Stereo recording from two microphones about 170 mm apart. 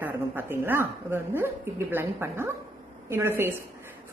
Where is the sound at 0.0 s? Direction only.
10° right (ahead or behind).